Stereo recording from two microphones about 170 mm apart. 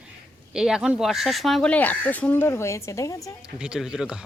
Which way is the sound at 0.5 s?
5° right (ahead or behind).